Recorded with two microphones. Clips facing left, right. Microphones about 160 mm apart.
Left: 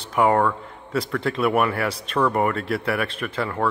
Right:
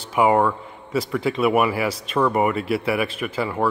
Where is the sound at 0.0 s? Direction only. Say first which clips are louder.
Right 1 dB; 5° right (ahead or behind).